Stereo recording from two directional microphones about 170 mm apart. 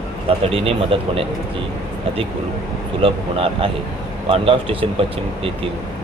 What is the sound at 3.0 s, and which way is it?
Speech, 35° right (ahead or behind).